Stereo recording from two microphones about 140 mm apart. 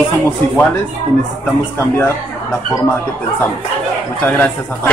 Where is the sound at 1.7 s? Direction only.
15° left (ahead or behind).